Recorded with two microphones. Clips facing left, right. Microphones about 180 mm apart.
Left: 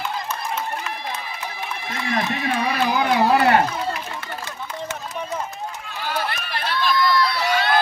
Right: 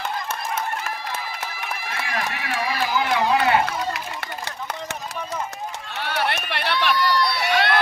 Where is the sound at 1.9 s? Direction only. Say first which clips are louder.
Left 5 dB; 20° left (ahead or behind).